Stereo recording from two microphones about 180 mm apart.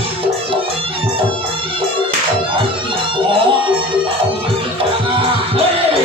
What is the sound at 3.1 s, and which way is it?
Music, 30° right (ahead or behind).